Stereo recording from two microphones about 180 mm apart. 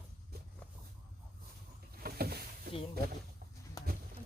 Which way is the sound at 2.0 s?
60° right (ahead or behind).